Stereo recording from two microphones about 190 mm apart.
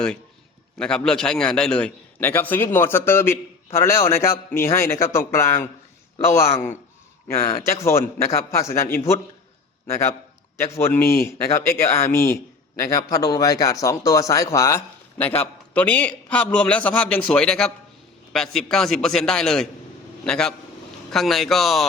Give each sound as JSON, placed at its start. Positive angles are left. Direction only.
{"t": 0.8, "sound": "a man's voice", "side_deg": 5}
{"t": 10.9, "sound": "a man's voice", "side_deg": 15}